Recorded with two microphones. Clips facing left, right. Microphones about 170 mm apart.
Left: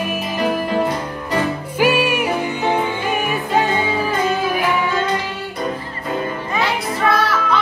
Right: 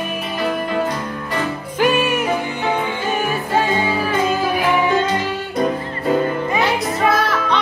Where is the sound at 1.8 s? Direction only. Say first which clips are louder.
Even; 10° left (ahead or behind).